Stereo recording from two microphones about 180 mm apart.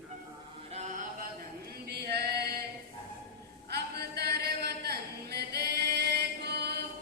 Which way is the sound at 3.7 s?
65° right (ahead or behind).